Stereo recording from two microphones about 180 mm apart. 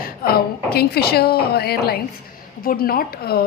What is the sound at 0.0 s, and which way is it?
A woman's voice, 55° left (ahead or behind).